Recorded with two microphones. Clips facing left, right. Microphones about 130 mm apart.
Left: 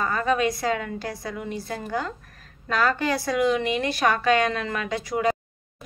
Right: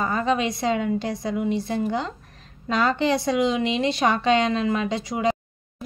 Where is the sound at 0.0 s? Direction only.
20° right (ahead or behind).